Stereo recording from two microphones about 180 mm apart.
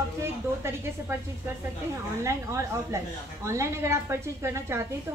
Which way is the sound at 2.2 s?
15° right (ahead or behind).